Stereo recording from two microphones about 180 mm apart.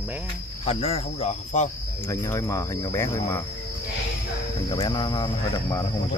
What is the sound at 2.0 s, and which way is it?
Speech, 15° left (ahead or behind).